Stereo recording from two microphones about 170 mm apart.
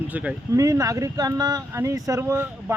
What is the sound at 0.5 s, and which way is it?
Speech, 20° right (ahead or behind).